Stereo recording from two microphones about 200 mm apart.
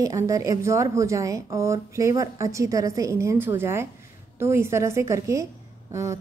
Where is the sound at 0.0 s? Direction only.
15° right (ahead or behind).